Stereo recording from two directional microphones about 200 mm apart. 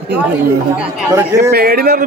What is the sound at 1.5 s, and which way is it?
Speech, 50° right (ahead or behind).